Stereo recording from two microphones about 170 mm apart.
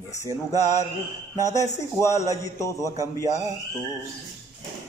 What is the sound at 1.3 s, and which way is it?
Speech, 20° left (ahead or behind).